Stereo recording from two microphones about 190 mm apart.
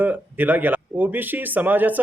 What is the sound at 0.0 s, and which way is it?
Speech, 10° right (ahead or behind).